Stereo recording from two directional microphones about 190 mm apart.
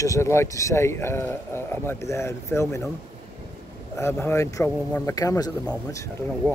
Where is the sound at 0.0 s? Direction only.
15° left (ahead or behind).